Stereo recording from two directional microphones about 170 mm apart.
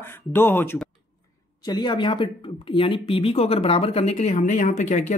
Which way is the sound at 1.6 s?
25° left (ahead or behind).